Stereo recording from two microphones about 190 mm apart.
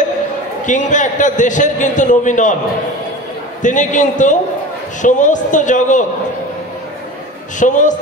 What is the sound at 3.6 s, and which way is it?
A man's voice, 40° left (ahead or behind).